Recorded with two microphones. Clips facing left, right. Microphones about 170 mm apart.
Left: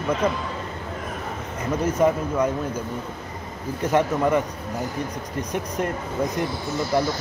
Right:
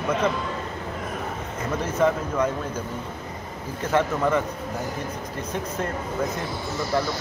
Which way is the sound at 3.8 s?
15° left (ahead or behind).